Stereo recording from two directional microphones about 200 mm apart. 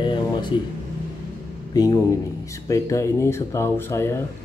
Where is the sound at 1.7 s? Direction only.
20° left (ahead or behind).